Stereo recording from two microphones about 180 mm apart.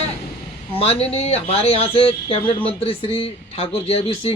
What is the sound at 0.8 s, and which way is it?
A man's voice, 35° left (ahead or behind).